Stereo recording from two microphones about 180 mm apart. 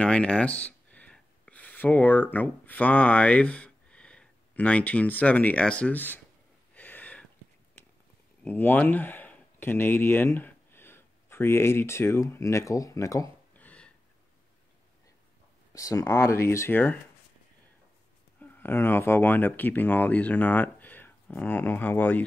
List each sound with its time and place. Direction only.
0.0 s speech: 5° left (ahead or behind)
6.7 s gasp: 10° left (ahead or behind)
8.5 s speech: 10° left (ahead or behind)
15.7 s speech: 20° left (ahead or behind)
18.4 s speech: 10° left (ahead or behind)